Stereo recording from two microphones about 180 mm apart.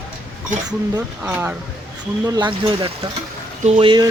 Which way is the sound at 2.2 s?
20° right (ahead or behind).